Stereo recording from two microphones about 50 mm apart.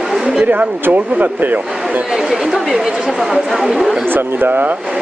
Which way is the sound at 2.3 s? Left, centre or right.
Centre.